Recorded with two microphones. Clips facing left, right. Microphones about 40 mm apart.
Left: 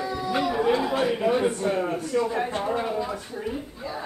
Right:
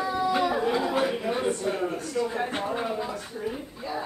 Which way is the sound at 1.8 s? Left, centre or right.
Left.